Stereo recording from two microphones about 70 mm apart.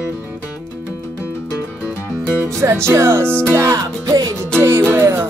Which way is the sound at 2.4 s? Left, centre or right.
Right.